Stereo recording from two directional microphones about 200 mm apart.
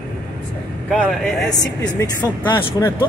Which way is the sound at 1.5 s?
20° left (ahead or behind).